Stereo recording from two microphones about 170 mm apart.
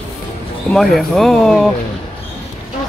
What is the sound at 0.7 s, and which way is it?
Speech, centre (ahead or behind).